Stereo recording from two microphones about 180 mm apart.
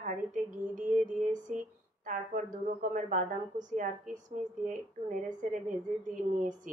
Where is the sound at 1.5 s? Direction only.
45° right (ahead or behind).